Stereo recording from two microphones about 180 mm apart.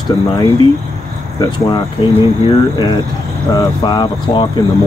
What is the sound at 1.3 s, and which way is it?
Speech, 25° left (ahead or behind).